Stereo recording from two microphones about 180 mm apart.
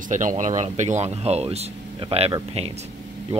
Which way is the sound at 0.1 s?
45° right (ahead or behind).